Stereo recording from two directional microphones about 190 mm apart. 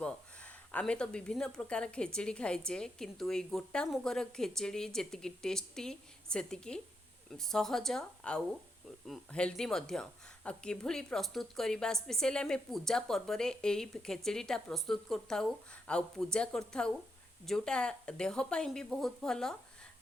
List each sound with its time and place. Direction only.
0.0 s speech: 5° left (ahead or behind)